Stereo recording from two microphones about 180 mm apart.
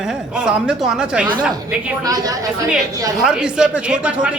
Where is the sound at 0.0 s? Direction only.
5° right (ahead or behind).